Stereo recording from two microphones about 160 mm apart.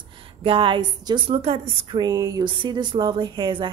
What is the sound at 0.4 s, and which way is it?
A woman's voice, 30° right (ahead or behind).